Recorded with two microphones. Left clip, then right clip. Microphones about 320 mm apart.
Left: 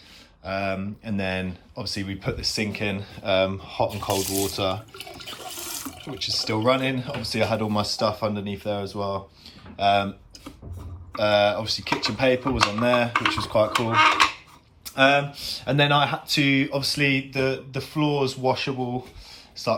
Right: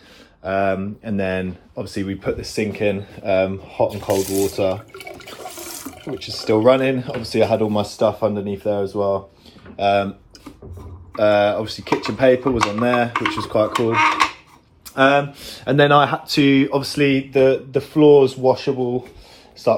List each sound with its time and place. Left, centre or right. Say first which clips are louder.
0.4 s speech: right 8 dB; centre
4.6 s toilet flush: right 6 dB; centre
6.3 s speech: right 8 dB; centre
7.4 s speech: right 7 dB; left
8.7 s speech: right 8 dB; centre
17.5 s speech: right 10 dB; left